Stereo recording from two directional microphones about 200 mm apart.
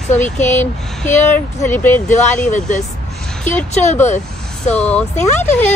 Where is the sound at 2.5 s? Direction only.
35° left (ahead or behind).